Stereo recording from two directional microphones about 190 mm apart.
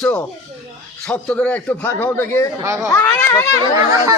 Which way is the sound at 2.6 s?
15° right (ahead or behind).